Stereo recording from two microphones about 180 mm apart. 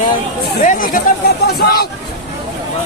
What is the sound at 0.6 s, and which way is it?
Speech, 50° left (ahead or behind).